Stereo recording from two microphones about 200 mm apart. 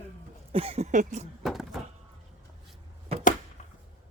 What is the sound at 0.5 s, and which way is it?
Speech, 30° right (ahead or behind).